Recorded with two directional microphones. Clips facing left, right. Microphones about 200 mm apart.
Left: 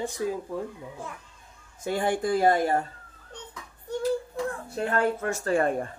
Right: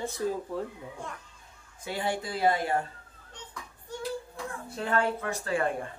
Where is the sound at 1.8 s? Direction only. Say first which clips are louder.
Left 6 dB; 50° left (ahead or behind).